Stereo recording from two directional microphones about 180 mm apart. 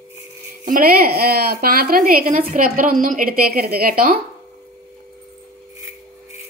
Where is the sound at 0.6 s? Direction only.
55° right (ahead or behind).